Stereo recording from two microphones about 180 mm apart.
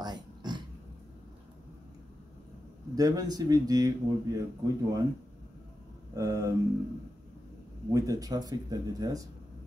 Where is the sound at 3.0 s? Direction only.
20° right (ahead or behind).